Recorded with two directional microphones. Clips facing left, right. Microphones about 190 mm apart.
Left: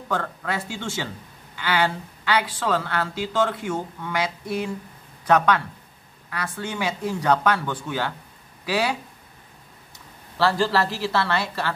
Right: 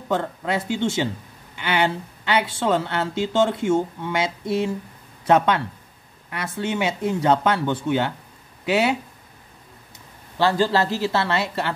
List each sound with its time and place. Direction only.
0.1 s speech: 20° right (ahead or behind)
10.3 s speech: 20° right (ahead or behind)